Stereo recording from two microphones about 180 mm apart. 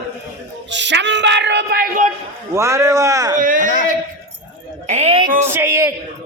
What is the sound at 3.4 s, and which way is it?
Speech, 50° right (ahead or behind).